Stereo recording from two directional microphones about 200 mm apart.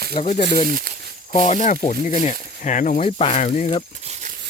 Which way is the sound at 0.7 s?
45° right (ahead or behind).